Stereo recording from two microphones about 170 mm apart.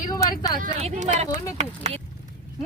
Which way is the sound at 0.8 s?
50° right (ahead or behind).